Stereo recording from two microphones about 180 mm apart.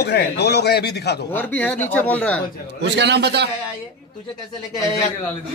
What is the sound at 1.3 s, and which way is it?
Speech, 10° left (ahead or behind).